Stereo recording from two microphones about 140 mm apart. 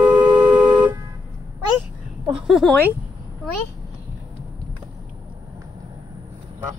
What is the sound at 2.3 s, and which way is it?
Speech, centre (ahead or behind).